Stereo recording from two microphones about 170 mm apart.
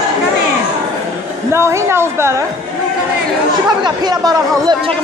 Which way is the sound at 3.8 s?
25° right (ahead or behind).